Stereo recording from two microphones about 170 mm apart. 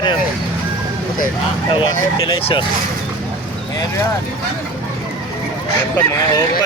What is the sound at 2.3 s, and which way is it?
Speech, 30° left (ahead or behind).